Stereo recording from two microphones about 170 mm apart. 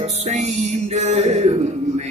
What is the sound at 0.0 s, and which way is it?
Music, 40° right (ahead or behind).